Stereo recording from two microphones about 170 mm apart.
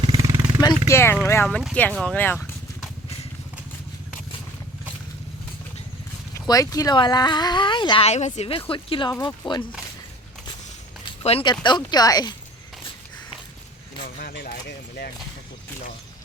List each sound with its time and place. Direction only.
0.0 s vehicle: 25° right (ahead or behind)
0.6 s speech: 20° left (ahead or behind)
6.5 s speech: 20° left (ahead or behind)
11.2 s speech: 35° left (ahead or behind)
14.2 s a sound: 60° left (ahead or behind)